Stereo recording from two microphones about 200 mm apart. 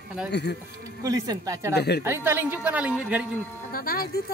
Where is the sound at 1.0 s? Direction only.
20° right (ahead or behind).